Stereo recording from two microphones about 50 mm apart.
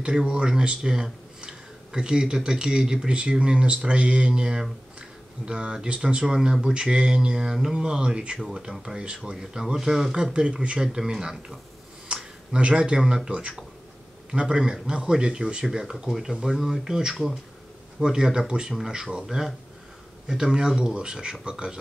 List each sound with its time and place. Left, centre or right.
0.0 s speech: centre
17.1 s speech: centre
18.0 s speech: centre